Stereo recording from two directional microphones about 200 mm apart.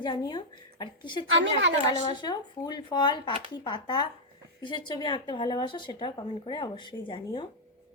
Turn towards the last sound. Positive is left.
turn(degrees=25)  # may be behind; listen again after turning